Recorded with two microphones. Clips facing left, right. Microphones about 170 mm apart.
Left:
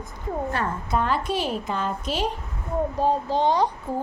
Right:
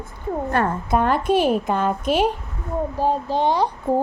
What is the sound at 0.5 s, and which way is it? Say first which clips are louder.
A woman's voice: right 8 dB; 55° right (ahead or behind).